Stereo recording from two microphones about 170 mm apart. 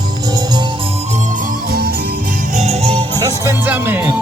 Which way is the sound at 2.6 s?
40° right (ahead or behind).